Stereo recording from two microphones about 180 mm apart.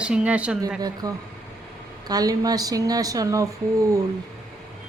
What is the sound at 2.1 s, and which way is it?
A woman's voice, 20° right (ahead or behind).